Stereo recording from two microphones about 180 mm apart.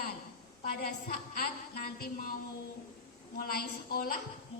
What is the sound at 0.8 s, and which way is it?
A woman's voice, 55° left (ahead or behind).